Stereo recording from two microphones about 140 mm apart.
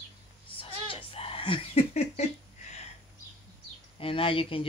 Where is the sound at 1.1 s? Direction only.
40° left (ahead or behind).